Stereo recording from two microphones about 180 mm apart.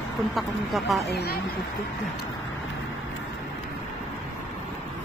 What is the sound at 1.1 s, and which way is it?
Speech, 60° left (ahead or behind).